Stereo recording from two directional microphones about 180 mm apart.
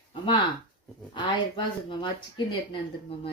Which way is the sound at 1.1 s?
25° left (ahead or behind).